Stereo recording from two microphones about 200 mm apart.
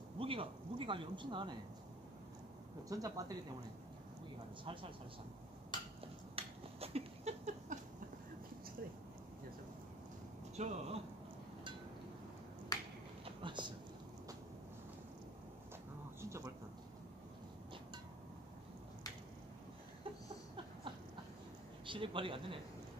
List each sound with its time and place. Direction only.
0.2 s speech: 25° right (ahead or behind)
2.9 s speech: 15° right (ahead or behind)
5.7 s a sound: 20° left (ahead or behind)
6.3 s finger snapping: 30° right (ahead or behind)
10.5 s speech: 35° right (ahead or behind)
12.7 s finger snapping: 20° left (ahead or behind)
13.2 s a sound: 25° right (ahead or behind)
16.2 s a sound: 15° right (ahead or behind)
21.8 s speech: 25° right (ahead or behind)